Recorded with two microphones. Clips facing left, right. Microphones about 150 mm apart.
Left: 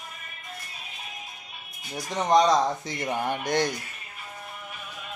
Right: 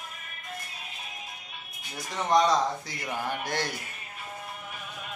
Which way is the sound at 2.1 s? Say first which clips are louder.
Left 3 dB; 20° left (ahead or behind).